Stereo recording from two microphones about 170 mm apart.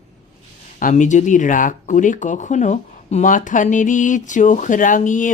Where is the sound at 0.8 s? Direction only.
50° left (ahead or behind).